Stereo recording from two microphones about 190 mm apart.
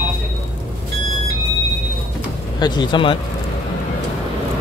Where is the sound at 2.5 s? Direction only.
20° left (ahead or behind).